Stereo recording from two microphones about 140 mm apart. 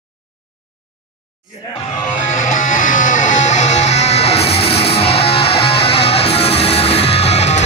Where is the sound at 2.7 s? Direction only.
65° left (ahead or behind).